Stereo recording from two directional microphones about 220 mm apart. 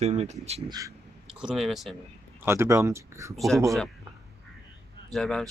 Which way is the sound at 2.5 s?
10° right (ahead or behind).